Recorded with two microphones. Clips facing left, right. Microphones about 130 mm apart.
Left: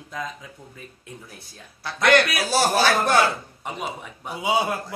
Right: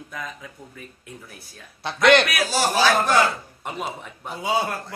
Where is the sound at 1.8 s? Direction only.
25° right (ahead or behind).